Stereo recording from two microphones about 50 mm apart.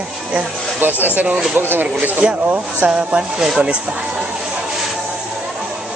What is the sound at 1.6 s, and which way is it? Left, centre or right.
Speech, right.